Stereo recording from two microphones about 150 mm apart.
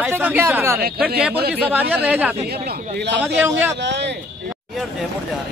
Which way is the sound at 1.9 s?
10° right (ahead or behind).